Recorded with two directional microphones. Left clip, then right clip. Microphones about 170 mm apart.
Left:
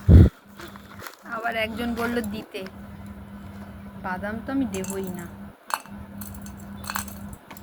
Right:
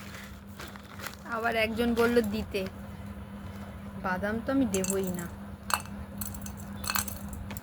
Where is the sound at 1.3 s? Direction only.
35° right (ahead or behind).